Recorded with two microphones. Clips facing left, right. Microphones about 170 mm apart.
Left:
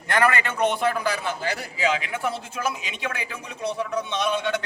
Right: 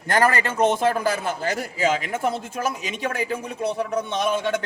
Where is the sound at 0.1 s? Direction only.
40° right (ahead or behind).